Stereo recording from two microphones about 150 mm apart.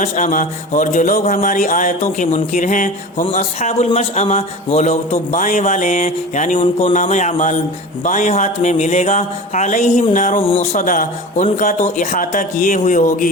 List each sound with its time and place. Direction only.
0.0 s speech: 60° left (ahead or behind)
3.3 s speech: 50° left (ahead or behind)
5.3 s speech: 65° left (ahead or behind)
6.6 s speech: 40° left (ahead or behind)
6.9 s speech: 55° left (ahead or behind)
10.4 s speech: 40° left (ahead or behind); by 13.3 s 60° left (ahead or behind)